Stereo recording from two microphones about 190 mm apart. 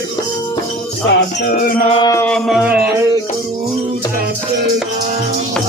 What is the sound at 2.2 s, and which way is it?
Music, centre (ahead or behind).